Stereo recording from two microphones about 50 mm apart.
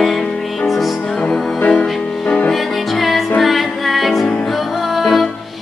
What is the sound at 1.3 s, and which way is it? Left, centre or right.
Music, centre.